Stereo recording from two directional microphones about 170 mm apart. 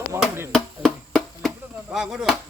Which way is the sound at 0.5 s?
Centre (ahead or behind).